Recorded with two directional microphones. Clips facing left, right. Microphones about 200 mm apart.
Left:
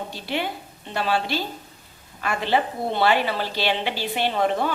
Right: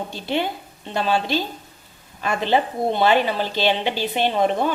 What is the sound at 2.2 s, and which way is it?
A woman's voice, 20° right (ahead or behind).